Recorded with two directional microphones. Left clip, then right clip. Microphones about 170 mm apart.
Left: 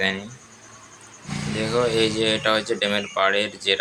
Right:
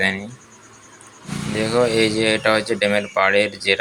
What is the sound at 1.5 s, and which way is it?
Speech, 20° right (ahead or behind).